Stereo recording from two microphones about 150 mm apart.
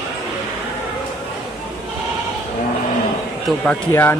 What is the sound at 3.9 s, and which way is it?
Speech, 15° left (ahead or behind).